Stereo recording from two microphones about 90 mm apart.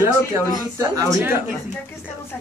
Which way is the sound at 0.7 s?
40° right (ahead or behind).